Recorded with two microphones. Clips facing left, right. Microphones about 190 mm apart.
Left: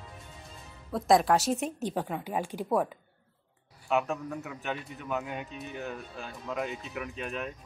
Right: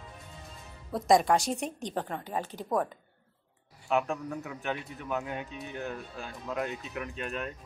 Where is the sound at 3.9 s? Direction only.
Centre (ahead or behind).